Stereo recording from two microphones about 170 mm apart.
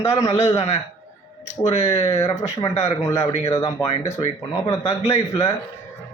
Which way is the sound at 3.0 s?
20° left (ahead or behind).